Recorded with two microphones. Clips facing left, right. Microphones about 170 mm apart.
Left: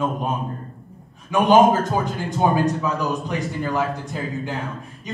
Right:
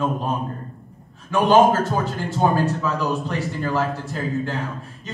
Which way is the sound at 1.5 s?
Centre (ahead or behind).